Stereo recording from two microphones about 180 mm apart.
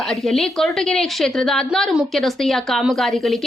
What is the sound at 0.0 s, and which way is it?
A woman's voice, centre (ahead or behind).